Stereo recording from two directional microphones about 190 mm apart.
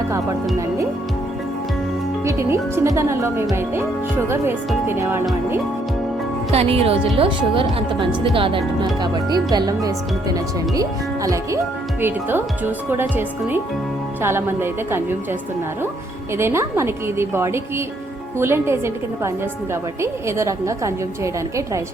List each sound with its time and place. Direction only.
2.2 s speech: 15° right (ahead or behind)
4.9 s speech: 10° right (ahead or behind)
6.5 s speech: 30° right (ahead or behind); by 15.4 s 10° right (ahead or behind)
16.4 s speech: 15° right (ahead or behind)